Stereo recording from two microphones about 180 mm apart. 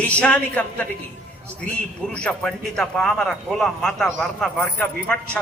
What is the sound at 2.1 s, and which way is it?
A man's voice, 5° left (ahead or behind).